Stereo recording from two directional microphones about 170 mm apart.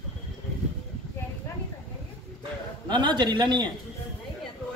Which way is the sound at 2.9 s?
25° right (ahead or behind).